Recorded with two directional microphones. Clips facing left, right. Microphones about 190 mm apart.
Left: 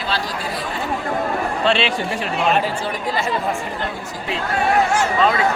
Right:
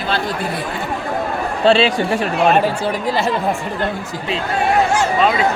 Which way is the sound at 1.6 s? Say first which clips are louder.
Right 7 dB; 35° right (ahead or behind).